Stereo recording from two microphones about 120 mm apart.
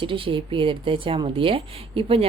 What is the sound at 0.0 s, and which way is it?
Speech, 45° right (ahead or behind).